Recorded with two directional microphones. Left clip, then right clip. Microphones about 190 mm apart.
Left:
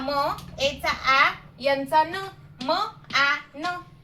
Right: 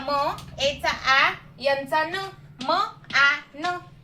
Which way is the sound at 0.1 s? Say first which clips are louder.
Right 1 dB; 10° left (ahead or behind).